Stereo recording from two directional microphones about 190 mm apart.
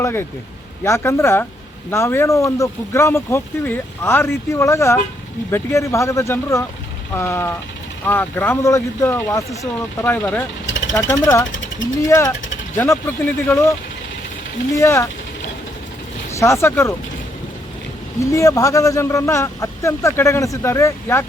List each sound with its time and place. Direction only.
0.0 s speech: 15° left (ahead or behind)
14.8 s speech: 15° left (ahead or behind)
16.3 s speech: 15° left (ahead or behind)
18.2 s speech: 15° left (ahead or behind)